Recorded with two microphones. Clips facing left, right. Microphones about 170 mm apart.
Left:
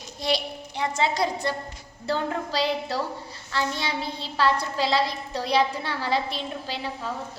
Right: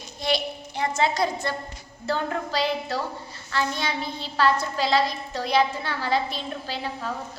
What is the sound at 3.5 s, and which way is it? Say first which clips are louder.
A child's voice: right 1 dB; 30° left (ahead or behind).